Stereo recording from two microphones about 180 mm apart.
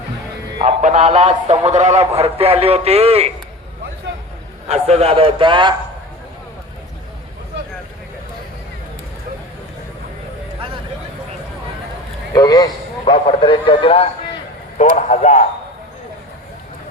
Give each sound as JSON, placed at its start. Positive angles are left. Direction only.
{"t": 0.6, "sound": "a man's voice", "side_deg": -40}
{"t": 4.7, "sound": "a man's voice", "side_deg": -35}
{"t": 12.3, "sound": "a man's voice", "side_deg": 20}